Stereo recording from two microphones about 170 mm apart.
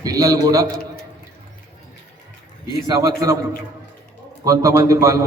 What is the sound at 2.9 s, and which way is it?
Speech, 20° right (ahead or behind).